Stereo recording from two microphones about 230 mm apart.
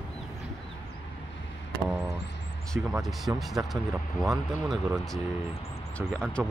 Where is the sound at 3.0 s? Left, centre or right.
Centre.